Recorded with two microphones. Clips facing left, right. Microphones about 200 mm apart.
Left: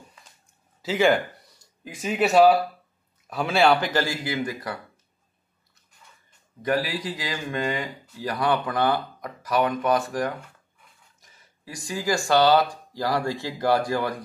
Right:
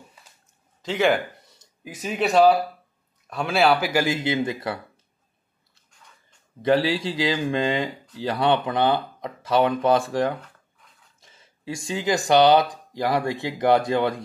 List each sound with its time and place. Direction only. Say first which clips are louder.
0.8 s speech: left 1 dB; centre (ahead or behind); by 4.7 s 25° right (ahead or behind)
6.6 s speech: right 5 dB; 25° right (ahead or behind)